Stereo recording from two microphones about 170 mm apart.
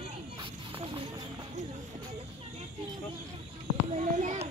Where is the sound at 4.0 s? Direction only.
45° right (ahead or behind).